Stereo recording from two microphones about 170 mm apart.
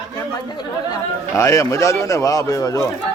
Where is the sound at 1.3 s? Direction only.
15° left (ahead or behind).